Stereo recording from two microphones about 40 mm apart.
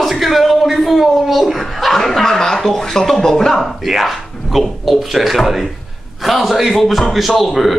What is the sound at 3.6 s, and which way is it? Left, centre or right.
A woman's voice, centre.